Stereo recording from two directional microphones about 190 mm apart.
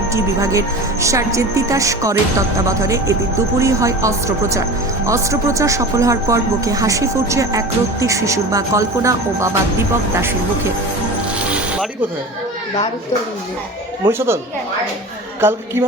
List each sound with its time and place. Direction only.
0.1 s speech: 15° right (ahead or behind)
11.4 s a sound: 5° right (ahead or behind)
14.0 s speech: 10° right (ahead or behind)
15.4 s speech: 10° right (ahead or behind)